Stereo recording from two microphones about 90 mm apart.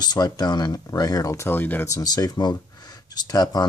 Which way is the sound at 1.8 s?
40° left (ahead or behind).